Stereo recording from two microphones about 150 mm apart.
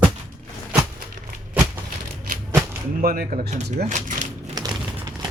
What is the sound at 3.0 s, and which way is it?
Speech, 75° right (ahead or behind).